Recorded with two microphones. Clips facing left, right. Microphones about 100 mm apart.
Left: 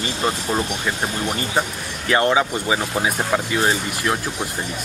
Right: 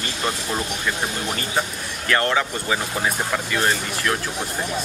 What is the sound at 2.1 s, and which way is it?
Speech, 15° left (ahead or behind).